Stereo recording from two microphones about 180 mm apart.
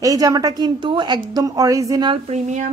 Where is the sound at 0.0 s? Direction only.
20° right (ahead or behind).